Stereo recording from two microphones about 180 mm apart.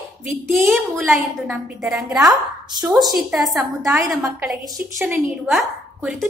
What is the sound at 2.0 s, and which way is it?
Speech, 15° right (ahead or behind).